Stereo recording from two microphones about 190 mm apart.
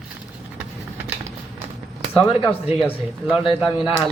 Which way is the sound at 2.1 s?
10° left (ahead or behind).